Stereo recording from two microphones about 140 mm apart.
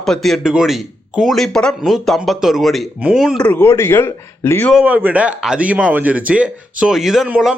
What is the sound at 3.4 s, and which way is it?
Speech, 15° left (ahead or behind).